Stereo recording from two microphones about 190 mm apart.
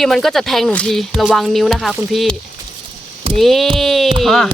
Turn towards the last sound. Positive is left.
turn(degrees=0)  # may be behind; listen again after turning